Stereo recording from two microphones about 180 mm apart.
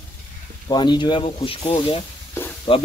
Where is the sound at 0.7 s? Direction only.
25° left (ahead or behind).